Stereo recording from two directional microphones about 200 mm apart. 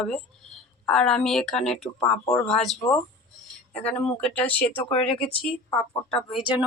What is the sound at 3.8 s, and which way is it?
Speech, 5° left (ahead or behind).